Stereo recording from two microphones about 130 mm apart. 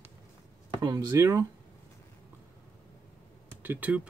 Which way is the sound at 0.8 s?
25° right (ahead or behind).